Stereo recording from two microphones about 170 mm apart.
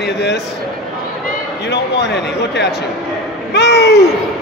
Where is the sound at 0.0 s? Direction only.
75° left (ahead or behind).